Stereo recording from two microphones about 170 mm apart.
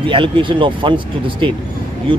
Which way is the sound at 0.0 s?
30° right (ahead or behind).